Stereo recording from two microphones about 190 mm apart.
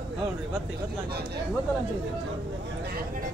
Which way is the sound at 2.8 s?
55° right (ahead or behind).